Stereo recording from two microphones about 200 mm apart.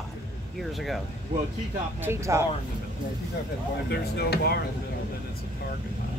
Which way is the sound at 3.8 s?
55° left (ahead or behind).